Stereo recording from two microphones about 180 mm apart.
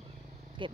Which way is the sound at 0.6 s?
25° right (ahead or behind).